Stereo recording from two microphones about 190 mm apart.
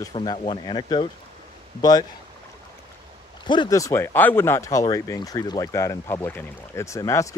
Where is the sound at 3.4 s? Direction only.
25° left (ahead or behind).